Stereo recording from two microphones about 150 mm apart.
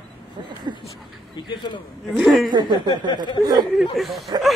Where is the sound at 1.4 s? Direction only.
30° left (ahead or behind).